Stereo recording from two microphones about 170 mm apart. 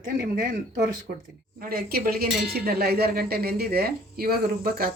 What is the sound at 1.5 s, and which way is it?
Speech, 60° right (ahead or behind).